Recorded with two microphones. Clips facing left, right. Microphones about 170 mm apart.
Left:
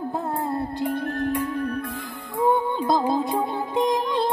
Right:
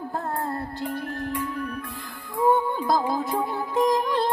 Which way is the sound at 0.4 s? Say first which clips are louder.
Left 4 dB; 20° left (ahead or behind).